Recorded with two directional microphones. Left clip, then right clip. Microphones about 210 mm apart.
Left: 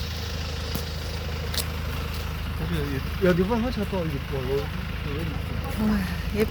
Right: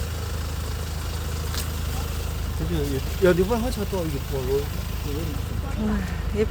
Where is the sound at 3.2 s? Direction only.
20° right (ahead or behind).